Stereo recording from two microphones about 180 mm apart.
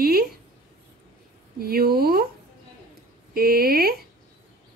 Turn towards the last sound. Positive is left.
turn(degrees=-55)  # may be behind; listen again after turning